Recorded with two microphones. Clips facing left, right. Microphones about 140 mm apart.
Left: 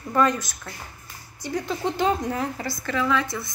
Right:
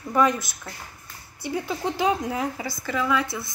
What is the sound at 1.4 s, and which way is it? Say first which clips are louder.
A woman's voice: left 1 dB; 10° right (ahead or behind).